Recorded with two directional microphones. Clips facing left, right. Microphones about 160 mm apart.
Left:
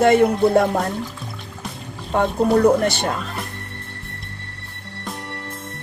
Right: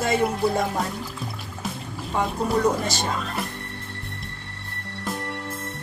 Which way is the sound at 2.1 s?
65° left (ahead or behind).